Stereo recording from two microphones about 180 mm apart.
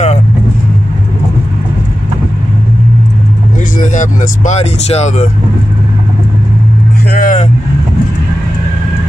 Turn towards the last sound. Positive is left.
turn(degrees=50)  # may be behind; listen again after turning